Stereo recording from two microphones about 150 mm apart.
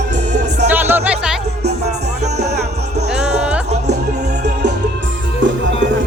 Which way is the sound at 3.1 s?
5° right (ahead or behind).